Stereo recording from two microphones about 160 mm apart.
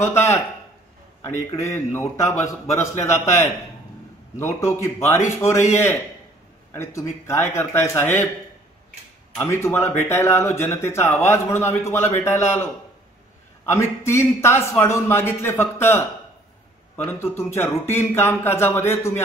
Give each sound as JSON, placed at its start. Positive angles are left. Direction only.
{"t": 0.0, "sound": "speech", "side_deg": 15}
{"t": 9.4, "sound": "speech", "side_deg": 15}
{"t": 13.7, "sound": "speech", "side_deg": 15}